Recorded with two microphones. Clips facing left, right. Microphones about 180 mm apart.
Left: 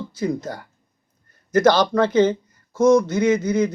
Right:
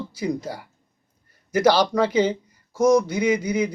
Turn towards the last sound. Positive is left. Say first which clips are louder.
# left 3 dB
turn(degrees=-10)  # may be behind; listen again after turning